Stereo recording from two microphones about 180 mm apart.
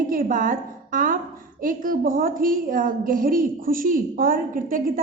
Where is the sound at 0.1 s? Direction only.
50° right (ahead or behind).